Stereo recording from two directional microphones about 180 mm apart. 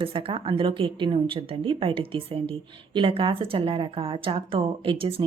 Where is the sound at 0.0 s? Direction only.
30° right (ahead or behind).